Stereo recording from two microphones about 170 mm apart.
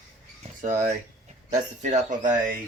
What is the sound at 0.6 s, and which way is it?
Speech, 45° right (ahead or behind).